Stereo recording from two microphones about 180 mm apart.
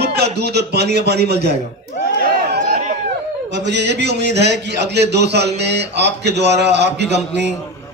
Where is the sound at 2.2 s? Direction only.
60° right (ahead or behind).